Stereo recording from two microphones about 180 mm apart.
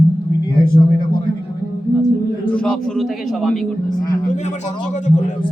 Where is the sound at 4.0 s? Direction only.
20° left (ahead or behind).